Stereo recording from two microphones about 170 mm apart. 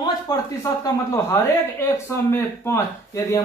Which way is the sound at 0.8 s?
20° left (ahead or behind).